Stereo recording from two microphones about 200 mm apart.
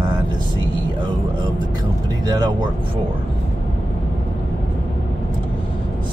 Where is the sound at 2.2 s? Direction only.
20° right (ahead or behind).